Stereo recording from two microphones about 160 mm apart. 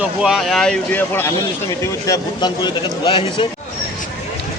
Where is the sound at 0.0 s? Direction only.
5° right (ahead or behind); by 3.5 s 30° left (ahead or behind).